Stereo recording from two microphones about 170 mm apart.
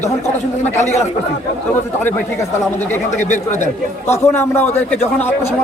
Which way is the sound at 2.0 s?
10° left (ahead or behind).